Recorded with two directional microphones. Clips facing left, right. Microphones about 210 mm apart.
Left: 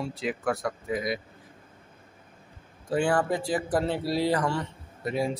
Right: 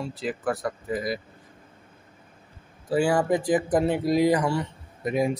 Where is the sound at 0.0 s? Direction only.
Centre (ahead or behind).